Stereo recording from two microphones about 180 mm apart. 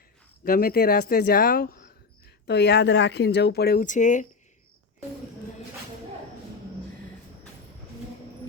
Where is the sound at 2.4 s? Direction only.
65° left (ahead or behind); by 4.3 s 45° left (ahead or behind).